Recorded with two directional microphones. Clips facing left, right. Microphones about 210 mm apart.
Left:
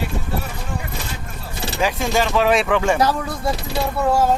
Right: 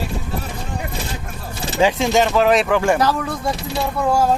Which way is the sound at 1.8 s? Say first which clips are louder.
Right 4 dB; 20° right (ahead or behind).